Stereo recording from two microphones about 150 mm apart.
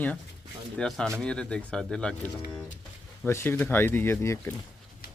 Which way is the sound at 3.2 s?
15° left (ahead or behind).